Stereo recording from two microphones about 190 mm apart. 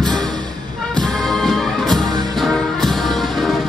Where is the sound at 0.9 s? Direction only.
Centre (ahead or behind).